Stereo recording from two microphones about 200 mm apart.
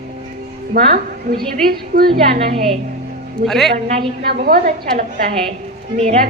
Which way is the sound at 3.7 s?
35° right (ahead or behind).